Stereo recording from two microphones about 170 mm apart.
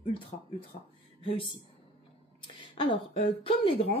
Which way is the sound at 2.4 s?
30° left (ahead or behind).